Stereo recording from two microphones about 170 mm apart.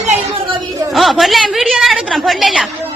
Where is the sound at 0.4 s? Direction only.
30° right (ahead or behind).